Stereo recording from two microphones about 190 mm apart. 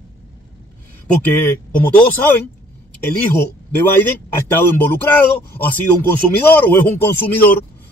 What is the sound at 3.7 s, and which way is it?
Speech, 10° left (ahead or behind).